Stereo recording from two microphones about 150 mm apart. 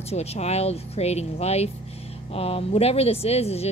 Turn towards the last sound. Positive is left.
turn(degrees=45)  # may be behind; listen again after turning